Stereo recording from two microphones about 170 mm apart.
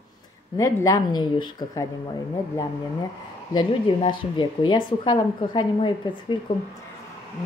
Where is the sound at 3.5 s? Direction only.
30° left (ahead or behind).